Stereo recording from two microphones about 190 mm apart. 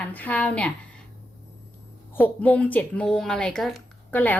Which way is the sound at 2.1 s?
10° left (ahead or behind).